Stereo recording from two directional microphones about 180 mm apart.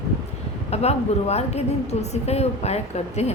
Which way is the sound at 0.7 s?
35° left (ahead or behind).